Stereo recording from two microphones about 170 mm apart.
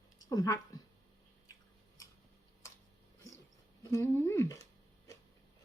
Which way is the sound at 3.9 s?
15° left (ahead or behind).